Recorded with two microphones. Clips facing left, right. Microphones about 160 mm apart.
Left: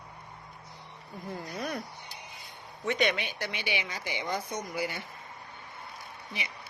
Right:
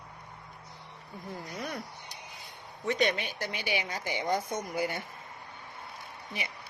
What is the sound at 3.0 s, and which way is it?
Speech, 40° right (ahead or behind).